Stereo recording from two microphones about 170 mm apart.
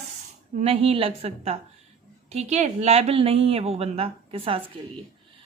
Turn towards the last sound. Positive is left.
turn(degrees=-35)  # may be behind; listen again after turning